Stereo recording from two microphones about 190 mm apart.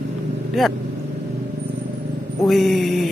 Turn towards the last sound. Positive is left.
turn(degrees=0)  # may be behind; listen again after turning